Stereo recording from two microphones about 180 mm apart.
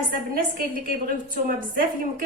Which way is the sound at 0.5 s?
50° right (ahead or behind).